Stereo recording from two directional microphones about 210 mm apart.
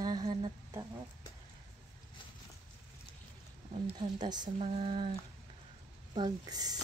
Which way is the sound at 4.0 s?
20° right (ahead or behind).